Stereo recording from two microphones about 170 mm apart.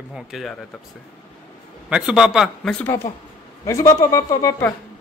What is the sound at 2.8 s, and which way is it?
Speech, 15° left (ahead or behind).